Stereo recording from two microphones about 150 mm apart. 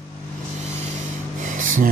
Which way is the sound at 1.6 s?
65° right (ahead or behind).